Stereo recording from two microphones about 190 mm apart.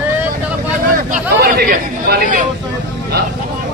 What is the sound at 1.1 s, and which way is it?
Speech, 50° right (ahead or behind).